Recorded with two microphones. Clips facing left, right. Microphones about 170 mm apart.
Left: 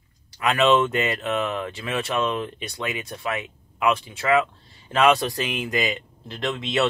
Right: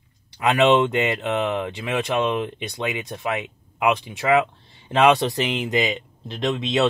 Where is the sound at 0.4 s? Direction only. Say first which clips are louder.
Right 2 dB; 20° right (ahead or behind).